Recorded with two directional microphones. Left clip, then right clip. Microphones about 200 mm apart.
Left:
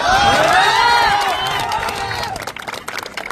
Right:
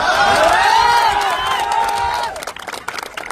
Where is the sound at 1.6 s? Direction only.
45° left (ahead or behind).